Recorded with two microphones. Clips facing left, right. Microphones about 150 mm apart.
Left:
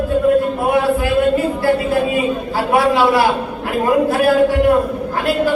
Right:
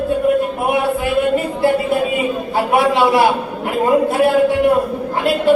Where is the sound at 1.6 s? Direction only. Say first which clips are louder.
Right 2 dB; 20° right (ahead or behind).